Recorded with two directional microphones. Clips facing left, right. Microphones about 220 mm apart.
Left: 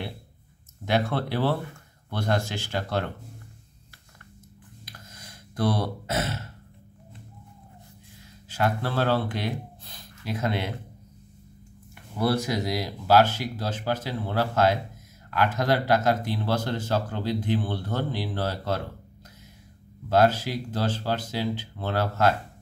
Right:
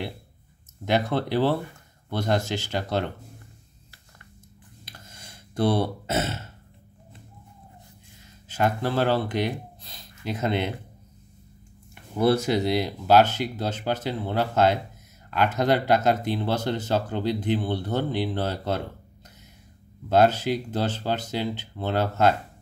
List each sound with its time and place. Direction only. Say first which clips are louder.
0.8 s speech: right 2 dB; 15° right (ahead or behind)
4.8 s a sound: even; 25° right (ahead or behind)
8.5 s speech: right 2 dB; 15° right (ahead or behind)
11.9 s speech: right 4 dB; 25° right (ahead or behind)
20.1 s speech: right 2 dB; 20° right (ahead or behind)